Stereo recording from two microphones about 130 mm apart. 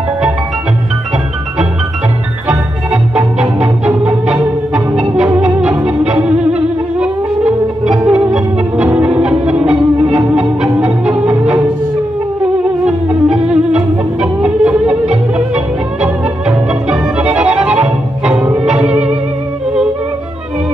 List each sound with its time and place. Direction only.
2.4 s organ: 10° right (ahead or behind)
5.9 s music: 10° right (ahead or behind)
12.8 s music: 10° right (ahead or behind)